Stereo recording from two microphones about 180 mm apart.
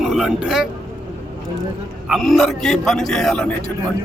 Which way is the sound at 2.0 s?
Centre (ahead or behind).